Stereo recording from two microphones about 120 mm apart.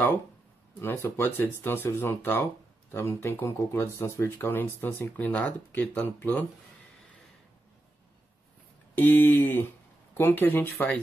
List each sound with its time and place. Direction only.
0.7 s speech: 20° left (ahead or behind)
8.9 s speech: 15° left (ahead or behind)